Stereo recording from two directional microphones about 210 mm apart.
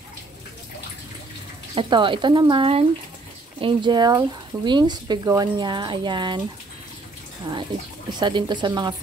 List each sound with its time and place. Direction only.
1.8 s speech: 25° right (ahead or behind)
8.1 s speech: 20° right (ahead or behind)